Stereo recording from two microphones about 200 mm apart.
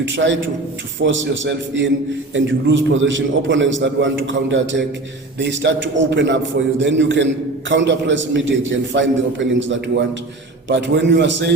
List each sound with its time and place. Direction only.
0.2 s a man's voice: 65° right (ahead or behind)